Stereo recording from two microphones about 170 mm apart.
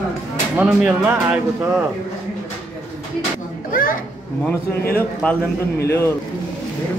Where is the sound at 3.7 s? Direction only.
55° left (ahead or behind).